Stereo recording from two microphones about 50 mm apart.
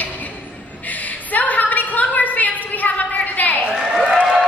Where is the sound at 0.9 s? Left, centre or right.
Left.